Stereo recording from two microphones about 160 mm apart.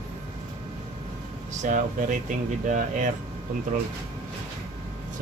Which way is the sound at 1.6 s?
55° right (ahead or behind).